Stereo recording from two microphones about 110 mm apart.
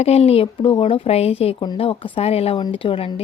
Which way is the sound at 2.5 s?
50° left (ahead or behind).